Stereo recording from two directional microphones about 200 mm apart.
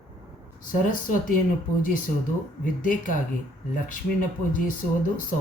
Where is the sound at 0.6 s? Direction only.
45° left (ahead or behind).